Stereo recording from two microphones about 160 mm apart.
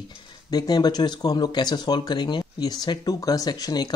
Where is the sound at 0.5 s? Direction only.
25° left (ahead or behind).